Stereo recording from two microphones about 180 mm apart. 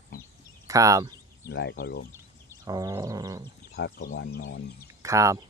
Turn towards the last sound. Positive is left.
turn(degrees=-15)  # may be behind; listen again after turning